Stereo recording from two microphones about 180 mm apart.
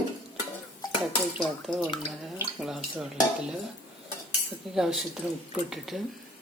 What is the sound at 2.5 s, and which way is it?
Speech, 5° right (ahead or behind).